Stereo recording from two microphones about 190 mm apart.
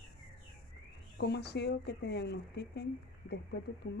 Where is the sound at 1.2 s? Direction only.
60° left (ahead or behind).